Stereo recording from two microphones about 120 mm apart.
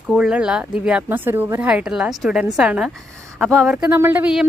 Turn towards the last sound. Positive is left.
turn(degrees=-15)  # may be behind; listen again after turning